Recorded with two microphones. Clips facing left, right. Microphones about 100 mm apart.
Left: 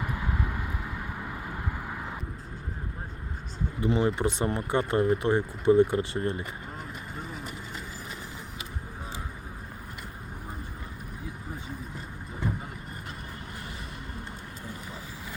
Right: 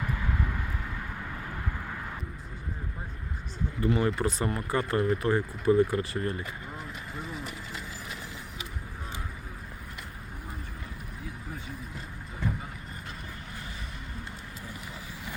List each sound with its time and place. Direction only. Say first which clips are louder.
0.0 s vehicle: even; 15° left (ahead or behind)
3.8 s speech: left 1 dB; 20° left (ahead or behind)